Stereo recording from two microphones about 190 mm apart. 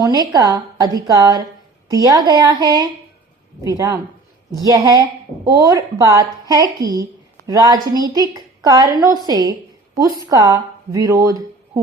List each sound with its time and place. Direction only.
0.2 s a woman's voice: 20° right (ahead or behind)